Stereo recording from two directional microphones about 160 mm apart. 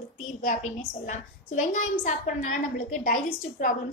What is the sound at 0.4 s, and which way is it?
A woman's voice, 55° left (ahead or behind).